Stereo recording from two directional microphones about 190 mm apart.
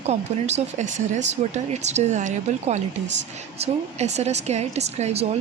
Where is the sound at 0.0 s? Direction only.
35° right (ahead or behind).